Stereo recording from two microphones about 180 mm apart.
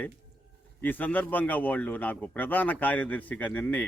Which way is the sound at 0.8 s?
10° left (ahead or behind).